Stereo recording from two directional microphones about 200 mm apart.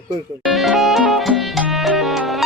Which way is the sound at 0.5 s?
Centre (ahead or behind).